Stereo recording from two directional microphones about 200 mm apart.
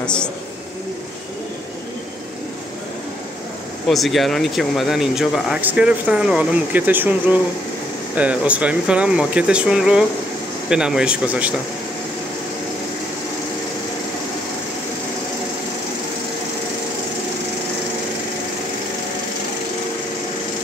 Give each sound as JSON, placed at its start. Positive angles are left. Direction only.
{"t": 0.0, "sound": "a woman's voice", "side_deg": 5}
{"t": 3.9, "sound": "speech", "side_deg": 0}
{"t": 8.2, "sound": "speech", "side_deg": -5}